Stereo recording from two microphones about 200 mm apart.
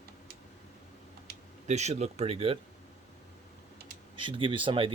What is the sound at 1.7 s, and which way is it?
Speech, 35° right (ahead or behind).